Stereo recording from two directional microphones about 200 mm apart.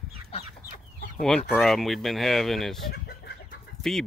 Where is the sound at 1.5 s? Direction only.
Centre (ahead or behind).